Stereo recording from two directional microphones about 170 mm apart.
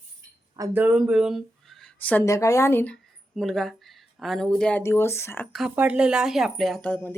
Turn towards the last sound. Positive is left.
turn(degrees=10)  # may be behind; listen again after turning